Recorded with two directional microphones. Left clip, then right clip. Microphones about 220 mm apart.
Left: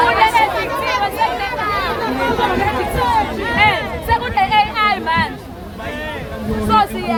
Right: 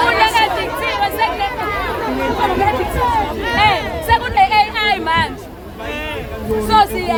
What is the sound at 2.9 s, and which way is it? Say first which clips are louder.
Speech: left 3 dB; 50° left (ahead or behind).